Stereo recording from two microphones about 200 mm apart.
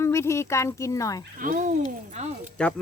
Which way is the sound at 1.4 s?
45° right (ahead or behind).